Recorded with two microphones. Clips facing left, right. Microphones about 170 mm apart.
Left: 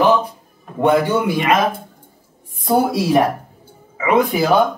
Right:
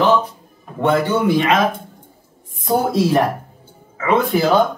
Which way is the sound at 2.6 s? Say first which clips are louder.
Even; 10° left (ahead or behind).